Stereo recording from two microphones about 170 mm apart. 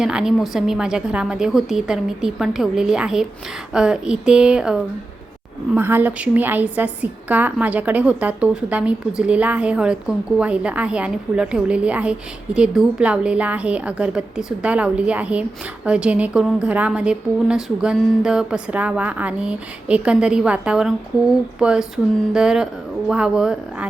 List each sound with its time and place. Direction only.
0.0 s a woman's voice: 5° right (ahead or behind)